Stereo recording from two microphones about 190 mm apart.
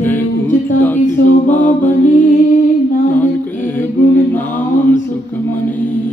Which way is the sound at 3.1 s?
10° left (ahead or behind).